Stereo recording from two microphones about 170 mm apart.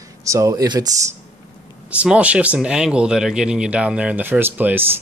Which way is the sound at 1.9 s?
10° right (ahead or behind).